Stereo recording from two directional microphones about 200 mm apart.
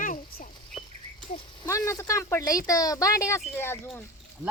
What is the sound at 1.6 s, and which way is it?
Speech, 15° left (ahead or behind).